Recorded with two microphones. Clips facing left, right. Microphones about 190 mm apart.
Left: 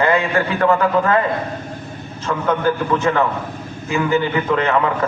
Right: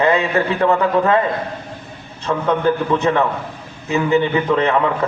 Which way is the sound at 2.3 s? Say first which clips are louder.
Right 2 dB; 20° right (ahead or behind).